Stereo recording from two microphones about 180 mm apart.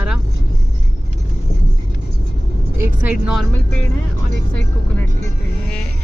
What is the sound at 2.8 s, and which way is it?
Speech, 10° right (ahead or behind).